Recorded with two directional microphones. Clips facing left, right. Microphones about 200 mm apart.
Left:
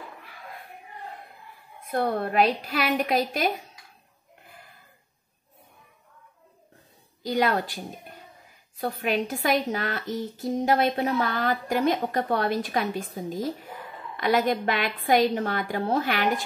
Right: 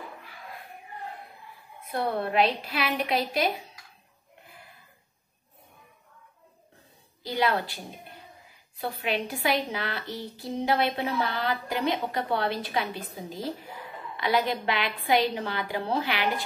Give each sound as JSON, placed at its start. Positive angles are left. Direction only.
{"t": 1.9, "sound": "a woman's voice", "side_deg": 45}
{"t": 7.2, "sound": "a woman's voice", "side_deg": 45}
{"t": 8.7, "sound": "a woman's voice", "side_deg": 45}